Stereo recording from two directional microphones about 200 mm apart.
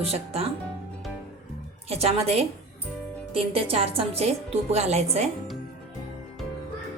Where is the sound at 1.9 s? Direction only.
30° right (ahead or behind).